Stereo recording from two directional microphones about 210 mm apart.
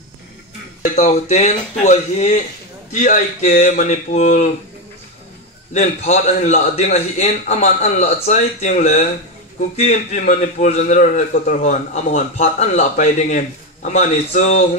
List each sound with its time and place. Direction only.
0.8 s a man's voice: 35° left (ahead or behind)
5.7 s a man's voice: 30° left (ahead or behind)